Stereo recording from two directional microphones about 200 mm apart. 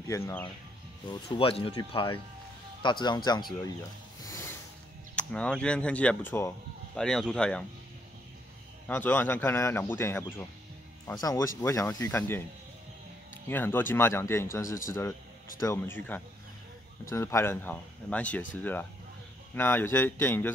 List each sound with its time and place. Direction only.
0.1 s a man's voice: 10° left (ahead or behind)
1.0 s speech: 25° left (ahead or behind)
4.3 s a sound: 10° left (ahead or behind)
5.1 s speech: 5° left (ahead or behind)
8.8 s a man's voice: 10° left (ahead or behind)
13.5 s a man's voice: 10° left (ahead or behind)